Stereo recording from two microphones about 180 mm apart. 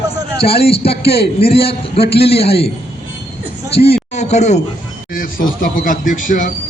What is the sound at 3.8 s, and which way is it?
A man's voice, 35° left (ahead or behind).